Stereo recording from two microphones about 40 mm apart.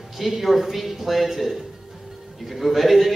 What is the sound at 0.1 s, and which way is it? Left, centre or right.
A man's voice, centre.